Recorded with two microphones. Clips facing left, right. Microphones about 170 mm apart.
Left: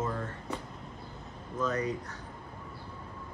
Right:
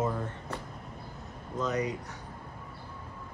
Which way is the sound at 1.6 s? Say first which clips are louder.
Even; 15° right (ahead or behind).